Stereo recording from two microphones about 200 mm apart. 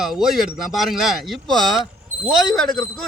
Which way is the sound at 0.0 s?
Centre (ahead or behind).